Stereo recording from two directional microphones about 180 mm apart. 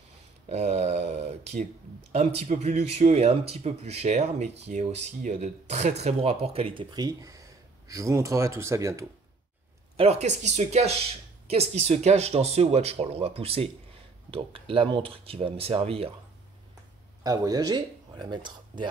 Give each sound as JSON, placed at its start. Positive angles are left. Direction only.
{"t": 0.5, "sound": "a sound", "side_deg": -40}
{"t": 2.1, "sound": "speech", "side_deg": -40}
{"t": 9.9, "sound": "speech", "side_deg": -35}
{"t": 17.2, "sound": "speech", "side_deg": -20}